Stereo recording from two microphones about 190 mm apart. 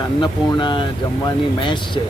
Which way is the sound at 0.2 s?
25° left (ahead or behind).